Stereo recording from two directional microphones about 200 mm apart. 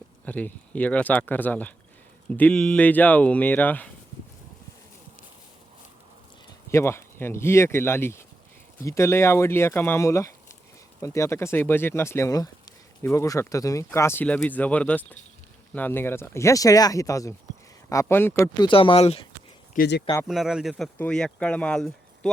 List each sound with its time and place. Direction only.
0.3 s speech: 10° left (ahead or behind)
6.7 s speech: 15° left (ahead or behind)
18.6 s speech: 25° left (ahead or behind)
19.7 s speech: 50° left (ahead or behind)
20.2 s speech: centre (ahead or behind)